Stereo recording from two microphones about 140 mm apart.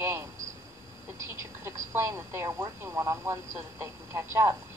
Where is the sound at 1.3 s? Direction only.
20° right (ahead or behind).